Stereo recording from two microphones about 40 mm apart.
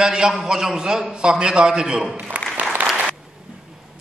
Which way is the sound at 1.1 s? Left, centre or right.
Right.